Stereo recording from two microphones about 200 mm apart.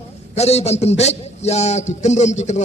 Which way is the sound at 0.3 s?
30° left (ahead or behind).